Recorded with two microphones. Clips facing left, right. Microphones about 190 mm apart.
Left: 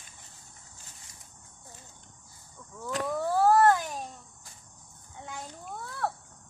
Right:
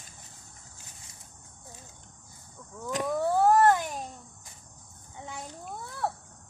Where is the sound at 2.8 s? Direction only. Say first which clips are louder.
Right 2 dB; 15° right (ahead or behind).